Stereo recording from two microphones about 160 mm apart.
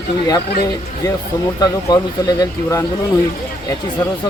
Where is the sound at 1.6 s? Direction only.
25° left (ahead or behind).